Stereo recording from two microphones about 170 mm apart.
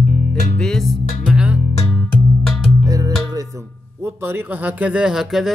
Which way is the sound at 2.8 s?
20° right (ahead or behind).